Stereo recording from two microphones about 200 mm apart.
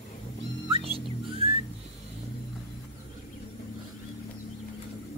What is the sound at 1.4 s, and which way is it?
Whistling, 30° right (ahead or behind).